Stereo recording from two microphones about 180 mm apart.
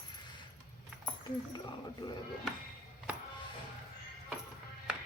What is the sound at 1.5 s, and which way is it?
Speech, 25° left (ahead or behind).